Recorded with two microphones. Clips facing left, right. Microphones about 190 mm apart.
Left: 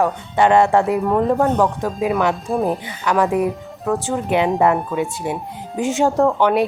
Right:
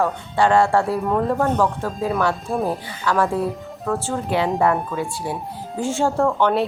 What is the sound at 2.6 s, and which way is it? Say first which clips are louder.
Speech: left 2 dB; 20° left (ahead or behind).